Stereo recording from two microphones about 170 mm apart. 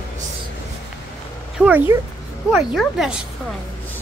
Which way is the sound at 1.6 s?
10° right (ahead or behind).